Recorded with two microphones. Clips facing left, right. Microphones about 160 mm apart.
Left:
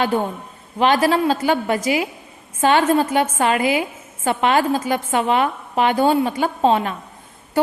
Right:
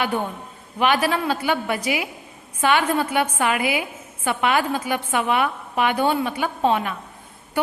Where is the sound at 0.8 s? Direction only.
40° left (ahead or behind).